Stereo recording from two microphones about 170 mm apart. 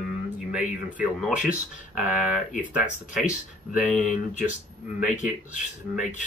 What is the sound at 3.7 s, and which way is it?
Speech, 5° left (ahead or behind).